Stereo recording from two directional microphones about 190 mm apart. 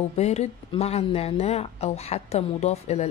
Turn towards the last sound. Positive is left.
turn(degrees=35)  # may be behind; listen again after turning